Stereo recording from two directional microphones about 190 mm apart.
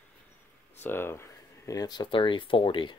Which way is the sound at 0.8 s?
10° left (ahead or behind).